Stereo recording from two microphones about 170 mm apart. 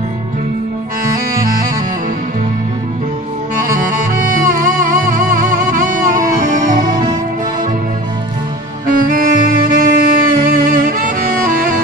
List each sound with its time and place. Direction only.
4.1 s music: 55° right (ahead or behind)
8.8 s saxophone: 55° right (ahead or behind)